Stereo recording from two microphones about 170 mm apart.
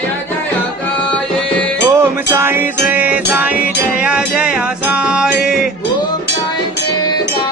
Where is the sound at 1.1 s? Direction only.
5° left (ahead or behind).